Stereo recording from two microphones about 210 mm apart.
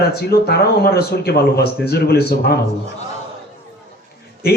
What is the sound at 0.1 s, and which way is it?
A man's voice, 50° left (ahead or behind).